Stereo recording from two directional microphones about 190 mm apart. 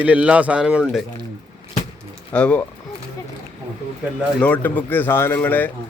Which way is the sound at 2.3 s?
5° left (ahead or behind).